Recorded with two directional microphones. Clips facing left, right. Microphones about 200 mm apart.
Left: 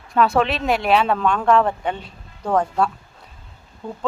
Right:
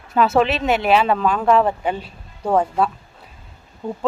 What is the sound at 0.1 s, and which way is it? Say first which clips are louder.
Speech: right 1 dB; 5° right (ahead or behind).